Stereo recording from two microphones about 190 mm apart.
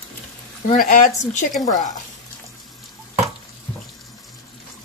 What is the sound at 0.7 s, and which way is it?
Speech, 40° left (ahead or behind).